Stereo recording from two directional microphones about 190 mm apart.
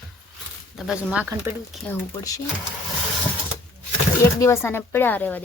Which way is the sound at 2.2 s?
15° left (ahead or behind).